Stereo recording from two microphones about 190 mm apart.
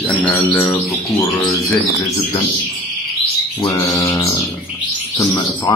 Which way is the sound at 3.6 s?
15° left (ahead or behind).